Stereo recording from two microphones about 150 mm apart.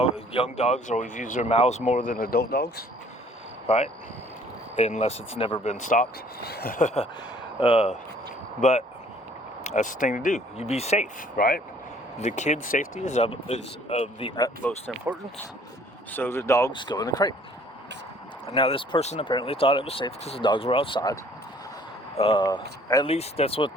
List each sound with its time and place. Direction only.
0.0 s speech: 45° left (ahead or behind); by 2.8 s 90° left
3.7 s speech: 40° left (ahead or behind)
5.7 s speech: 60° left (ahead or behind); by 7.9 s 40° left (ahead or behind)
8.6 s speech: 55° left (ahead or behind)
11.3 s speech: 70° left (ahead or behind)
12.2 s speech: 50° left (ahead or behind)
13.1 s speech: 45° left (ahead or behind)
14.6 s speech: 10° left (ahead or behind)
15.1 s speech: 15° right (ahead or behind)
16.1 s speech: 15° left (ahead or behind)
16.7 s speech: 30° left (ahead or behind)
18.4 s speech: 40° left (ahead or behind)
22.2 s speech: 35° left (ahead or behind)
23.0 s speech: 40° left (ahead or behind)